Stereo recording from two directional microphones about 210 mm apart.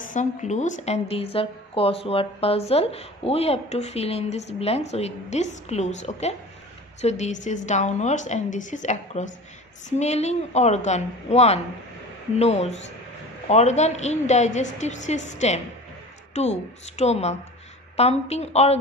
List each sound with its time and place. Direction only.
0.0 s a woman's voice: 35° left (ahead or behind)